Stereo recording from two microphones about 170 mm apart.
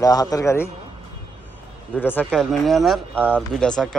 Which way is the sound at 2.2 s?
Centre (ahead or behind).